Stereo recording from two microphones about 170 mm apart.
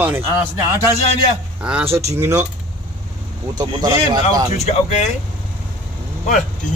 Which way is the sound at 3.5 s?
20° right (ahead or behind).